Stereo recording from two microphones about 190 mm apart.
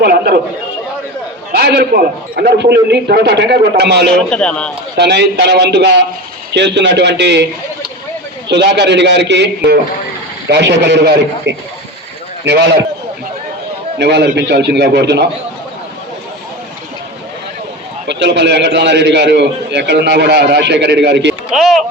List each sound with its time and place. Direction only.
0.0 s a man's voice: 55° right (ahead or behind)
1.5 s a man's voice: 55° right (ahead or behind)
4.3 s a man's voice: 5° left (ahead or behind)
4.9 s a man's voice: 60° right (ahead or behind)
8.4 s a man's voice: 65° right (ahead or behind)
10.5 s a man's voice: 65° right (ahead or behind)
14.0 s a man's voice: 65° right (ahead or behind)
18.1 s a man's voice: 65° right (ahead or behind)
21.5 s a man's voice: centre (ahead or behind)